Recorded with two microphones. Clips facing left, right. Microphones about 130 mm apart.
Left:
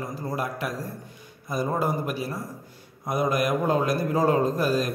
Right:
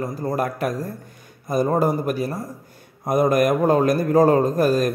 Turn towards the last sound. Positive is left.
turn(degrees=-50)  # may be behind; listen again after turning